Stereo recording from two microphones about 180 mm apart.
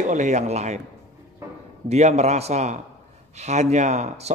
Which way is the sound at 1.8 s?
35° right (ahead or behind).